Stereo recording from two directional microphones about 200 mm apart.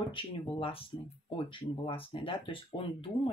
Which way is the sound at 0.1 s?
25° left (ahead or behind).